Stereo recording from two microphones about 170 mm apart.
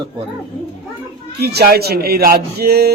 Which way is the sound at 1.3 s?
70° right (ahead or behind).